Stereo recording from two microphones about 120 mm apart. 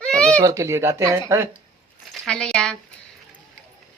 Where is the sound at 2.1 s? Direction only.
5° left (ahead or behind).